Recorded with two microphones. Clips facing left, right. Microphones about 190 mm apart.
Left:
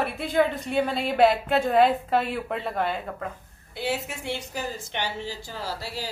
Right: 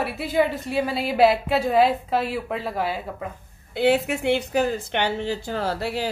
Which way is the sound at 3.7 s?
60° right (ahead or behind).